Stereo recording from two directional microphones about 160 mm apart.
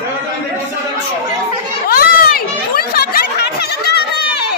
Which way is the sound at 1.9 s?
65° left (ahead or behind).